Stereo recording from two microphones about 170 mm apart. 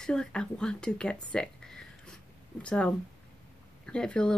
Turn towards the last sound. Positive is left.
turn(degrees=5)  # may be behind; listen again after turning